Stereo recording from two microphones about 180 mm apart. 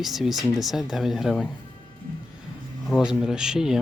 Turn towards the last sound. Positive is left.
turn(degrees=-5)  # may be behind; listen again after turning